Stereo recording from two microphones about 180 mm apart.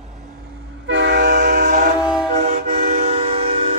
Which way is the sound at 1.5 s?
50° right (ahead or behind).